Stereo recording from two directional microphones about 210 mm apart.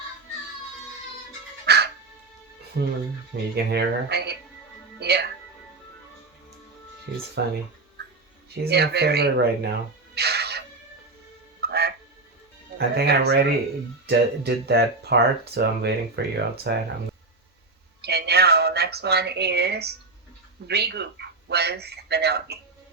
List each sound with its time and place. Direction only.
1.6 s music: 50° right (ahead or behind)
2.8 s speech: 55° right (ahead or behind)
4.9 s music: 50° right (ahead or behind)
7.4 s speech: 50° right (ahead or behind)
8.6 s speech: 50° right (ahead or behind)
10.2 s music: 50° right (ahead or behind)
11.6 s music: 50° right (ahead or behind)
12.9 s speech: 50° right (ahead or behind)
18.0 s music: 50° right (ahead or behind)
20.7 s speech: 50° right (ahead or behind)